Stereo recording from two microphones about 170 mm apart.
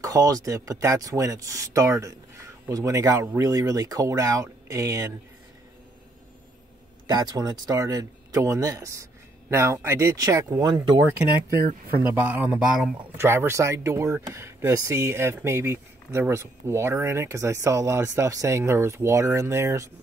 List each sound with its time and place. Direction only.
0.0 s speech: 20° right (ahead or behind)
7.1 s speech: 25° right (ahead or behind)
12.3 s speech: 10° right (ahead or behind)